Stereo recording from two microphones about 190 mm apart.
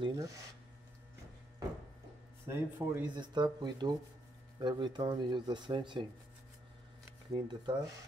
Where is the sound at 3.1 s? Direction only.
25° right (ahead or behind).